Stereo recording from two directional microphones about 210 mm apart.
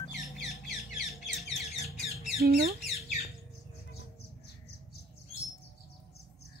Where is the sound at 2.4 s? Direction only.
45° right (ahead or behind).